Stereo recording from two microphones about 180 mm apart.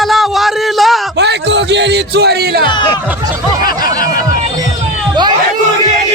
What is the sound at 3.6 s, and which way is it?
Snicker, 55° left (ahead or behind).